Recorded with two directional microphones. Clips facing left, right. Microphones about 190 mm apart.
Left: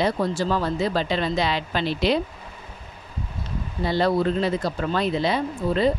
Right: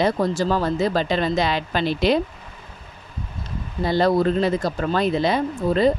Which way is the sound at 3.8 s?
45° right (ahead or behind).